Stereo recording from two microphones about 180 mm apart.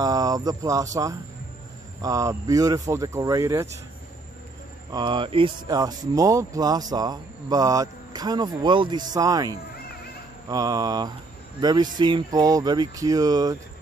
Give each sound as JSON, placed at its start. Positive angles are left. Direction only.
{"t": 0.0, "sound": "speech", "side_deg": -20}
{"t": 2.0, "sound": "speech", "side_deg": -20}
{"t": 4.9, "sound": "speech", "side_deg": -25}